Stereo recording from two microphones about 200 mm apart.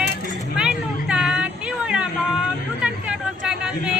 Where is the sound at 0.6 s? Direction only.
5° right (ahead or behind).